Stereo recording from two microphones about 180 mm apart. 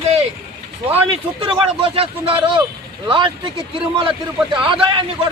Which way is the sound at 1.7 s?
30° right (ahead or behind).